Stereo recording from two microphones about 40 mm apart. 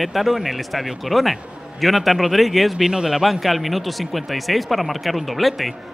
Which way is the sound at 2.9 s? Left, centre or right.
Centre.